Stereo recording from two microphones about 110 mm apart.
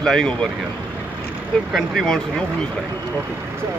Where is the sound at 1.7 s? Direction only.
Centre (ahead or behind).